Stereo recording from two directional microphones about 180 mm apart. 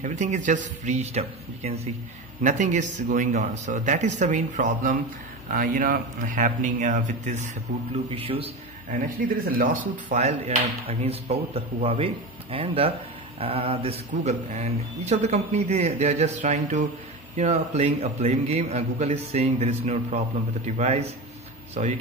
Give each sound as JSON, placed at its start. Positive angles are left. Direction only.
{"t": 0.0, "sound": "a man's voice", "side_deg": -45}
{"t": 9.6, "sound": "a man's voice", "side_deg": -45}